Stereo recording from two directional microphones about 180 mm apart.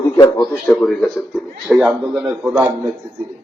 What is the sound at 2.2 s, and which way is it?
Speech, 10° right (ahead or behind).